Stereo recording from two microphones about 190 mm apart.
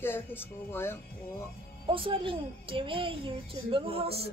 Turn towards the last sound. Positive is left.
turn(degrees=-30)  # may be behind; listen again after turning